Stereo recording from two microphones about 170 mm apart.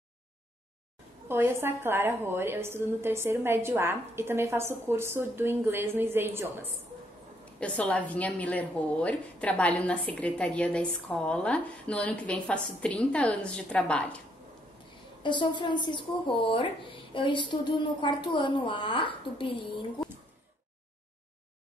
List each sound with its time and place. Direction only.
1.3 s a woman's voice: 15° right (ahead or behind)
7.6 s a woman's voice: 10° left (ahead or behind)
15.2 s a woman's voice: 25° left (ahead or behind)